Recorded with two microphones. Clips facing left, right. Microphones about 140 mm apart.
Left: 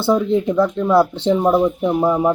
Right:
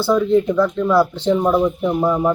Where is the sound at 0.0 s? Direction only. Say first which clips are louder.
Right 1 dB; 20° left (ahead or behind).